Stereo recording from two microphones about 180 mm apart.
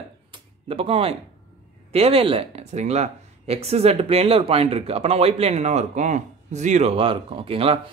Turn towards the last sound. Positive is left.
turn(degrees=-30)  # may be behind; listen again after turning